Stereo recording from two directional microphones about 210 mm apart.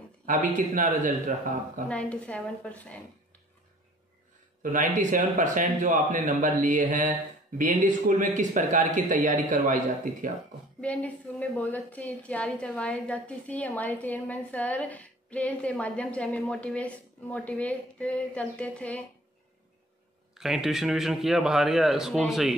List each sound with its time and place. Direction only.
0.5 s speech: 40° right (ahead or behind)
1.9 s speech: 5° left (ahead or behind)
4.7 s speech: 35° right (ahead or behind)
10.8 s a woman's voice: 5° left (ahead or behind)
20.3 s speech: centre (ahead or behind)